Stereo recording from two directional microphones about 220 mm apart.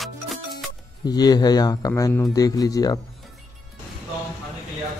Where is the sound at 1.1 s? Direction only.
20° left (ahead or behind).